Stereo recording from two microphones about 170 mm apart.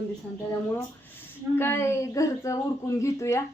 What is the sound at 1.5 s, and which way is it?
Speech, 15° left (ahead or behind).